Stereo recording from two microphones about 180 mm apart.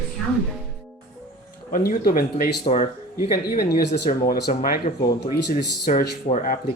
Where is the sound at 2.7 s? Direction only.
35° left (ahead or behind).